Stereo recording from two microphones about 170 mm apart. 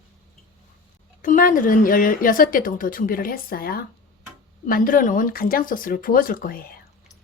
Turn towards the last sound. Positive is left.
turn(degrees=55)  # may be behind; listen again after turning